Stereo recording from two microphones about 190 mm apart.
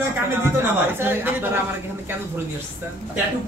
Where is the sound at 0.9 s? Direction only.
10° right (ahead or behind).